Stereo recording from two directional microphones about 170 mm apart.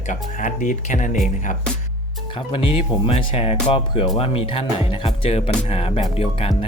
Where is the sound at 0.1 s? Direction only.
45° left (ahead or behind).